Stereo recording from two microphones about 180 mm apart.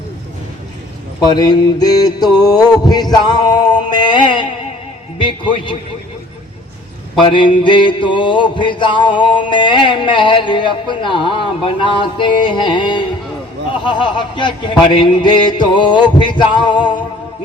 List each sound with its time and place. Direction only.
1.3 s mantra: 25° left (ahead or behind)
7.2 s mantra: 30° left (ahead or behind)